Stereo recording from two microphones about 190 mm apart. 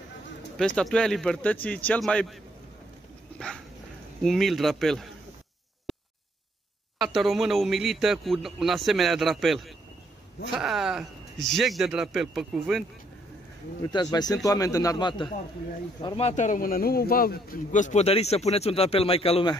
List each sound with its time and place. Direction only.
0.6 s speech: 5° left (ahead or behind)
3.3 s dog: 5° left (ahead or behind)
4.2 s speech: centre (ahead or behind)
5.9 s a sound: centre (ahead or behind)
7.2 s speech: centre (ahead or behind)
14.1 s a man's voice: 20° left (ahead or behind)